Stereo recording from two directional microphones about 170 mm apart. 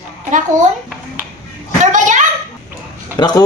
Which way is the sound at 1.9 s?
45° right (ahead or behind).